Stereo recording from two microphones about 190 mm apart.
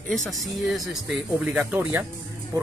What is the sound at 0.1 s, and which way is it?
Speech, centre (ahead or behind).